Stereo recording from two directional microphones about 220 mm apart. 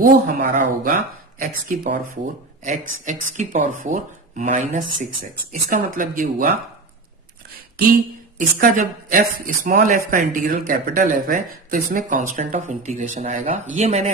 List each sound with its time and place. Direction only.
0.0 s speech: 35° right (ahead or behind)
8.4 s speech: 35° right (ahead or behind)